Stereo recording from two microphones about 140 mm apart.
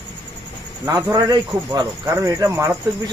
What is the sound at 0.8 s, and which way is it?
Speech, 25° right (ahead or behind).